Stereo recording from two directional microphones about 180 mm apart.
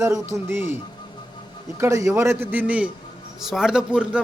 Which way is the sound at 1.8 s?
15° right (ahead or behind).